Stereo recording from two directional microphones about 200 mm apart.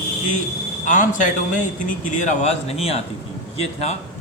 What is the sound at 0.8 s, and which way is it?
A man's voice, 40° left (ahead or behind).